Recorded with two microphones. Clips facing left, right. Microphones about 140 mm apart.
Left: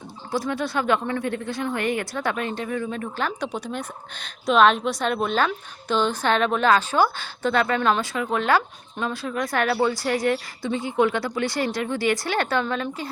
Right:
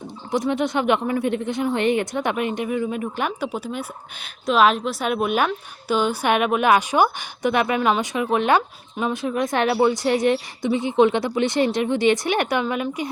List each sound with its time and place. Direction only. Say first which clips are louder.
0.3 s speech: right 4 dB; 20° right (ahead or behind)